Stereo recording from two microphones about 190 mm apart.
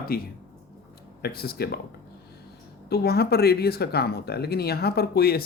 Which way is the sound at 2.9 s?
60° left (ahead or behind).